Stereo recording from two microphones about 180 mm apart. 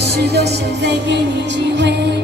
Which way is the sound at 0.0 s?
65° right (ahead or behind).